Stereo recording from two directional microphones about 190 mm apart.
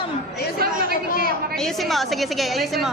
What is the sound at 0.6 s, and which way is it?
Speech, 55° right (ahead or behind).